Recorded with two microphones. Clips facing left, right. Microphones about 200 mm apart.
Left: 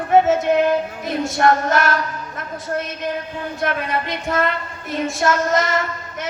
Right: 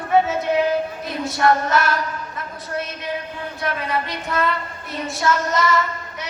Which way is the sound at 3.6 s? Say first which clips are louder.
Left 2 dB; 50° left (ahead or behind).